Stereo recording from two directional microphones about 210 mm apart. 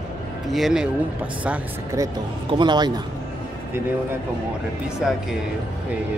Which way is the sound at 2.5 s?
20° right (ahead or behind).